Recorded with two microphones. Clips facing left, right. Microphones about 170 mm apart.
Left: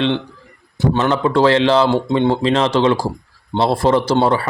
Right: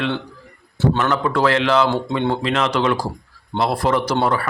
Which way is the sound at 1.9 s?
20° left (ahead or behind).